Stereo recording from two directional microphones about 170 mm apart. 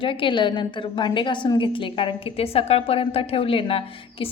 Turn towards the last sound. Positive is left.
turn(degrees=35)  # may be behind; listen again after turning